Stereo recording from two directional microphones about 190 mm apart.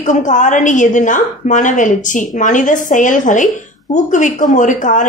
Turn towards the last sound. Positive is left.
turn(degrees=40)  # may be behind; listen again after turning